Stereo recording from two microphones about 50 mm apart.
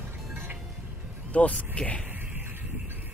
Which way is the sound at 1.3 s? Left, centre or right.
Left.